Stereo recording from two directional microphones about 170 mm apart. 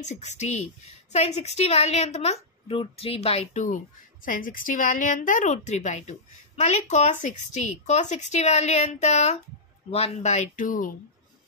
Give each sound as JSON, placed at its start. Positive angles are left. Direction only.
{"t": 0.0, "sound": "a woman's voice", "side_deg": 45}